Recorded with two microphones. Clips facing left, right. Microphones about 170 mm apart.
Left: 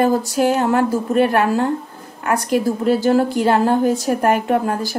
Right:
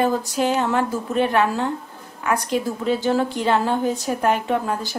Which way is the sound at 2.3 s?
10° left (ahead or behind).